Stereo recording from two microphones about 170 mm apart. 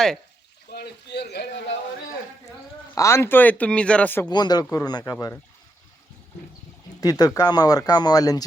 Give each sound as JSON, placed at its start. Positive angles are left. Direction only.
{"t": 0.7, "sound": "a sound", "side_deg": 75}
{"t": 2.9, "sound": "speech", "side_deg": 15}
{"t": 4.3, "sound": "speech", "side_deg": 25}
{"t": 7.0, "sound": "speech", "side_deg": 20}